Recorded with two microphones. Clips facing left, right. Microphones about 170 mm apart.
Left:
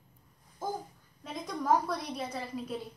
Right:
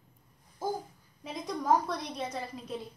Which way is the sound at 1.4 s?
5° left (ahead or behind).